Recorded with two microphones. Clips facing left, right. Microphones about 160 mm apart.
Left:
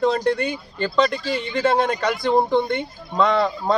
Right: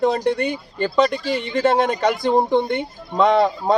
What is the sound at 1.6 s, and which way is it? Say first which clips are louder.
Speech: right 2 dB; 20° right (ahead or behind).